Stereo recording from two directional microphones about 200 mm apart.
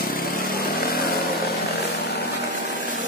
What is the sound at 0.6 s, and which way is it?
Vehicle, 50° left (ahead or behind).